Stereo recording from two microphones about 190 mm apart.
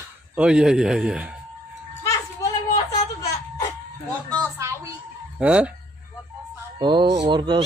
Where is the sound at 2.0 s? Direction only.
15° left (ahead or behind).